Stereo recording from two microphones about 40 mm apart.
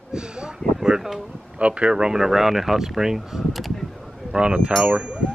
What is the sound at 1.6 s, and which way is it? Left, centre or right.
A woman's voice, right.